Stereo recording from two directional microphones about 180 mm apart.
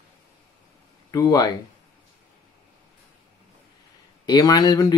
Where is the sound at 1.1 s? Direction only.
20° left (ahead or behind).